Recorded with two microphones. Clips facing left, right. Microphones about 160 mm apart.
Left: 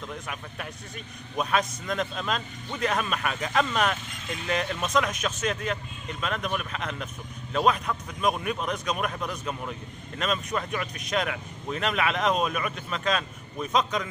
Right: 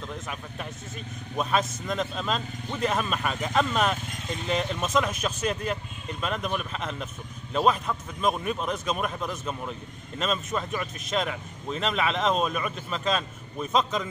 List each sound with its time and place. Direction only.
0.1 s speech: centre (ahead or behind)